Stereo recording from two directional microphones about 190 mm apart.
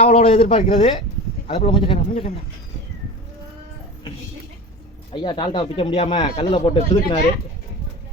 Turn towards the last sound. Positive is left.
turn(degrees=30)  # may be behind; listen again after turning